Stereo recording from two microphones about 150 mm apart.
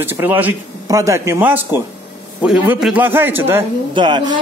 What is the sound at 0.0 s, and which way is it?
A man's voice, 15° right (ahead or behind).